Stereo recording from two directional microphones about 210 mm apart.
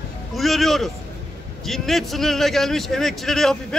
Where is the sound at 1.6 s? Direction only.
Centre (ahead or behind).